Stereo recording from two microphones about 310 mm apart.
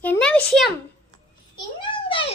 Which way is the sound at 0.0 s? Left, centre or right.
Centre.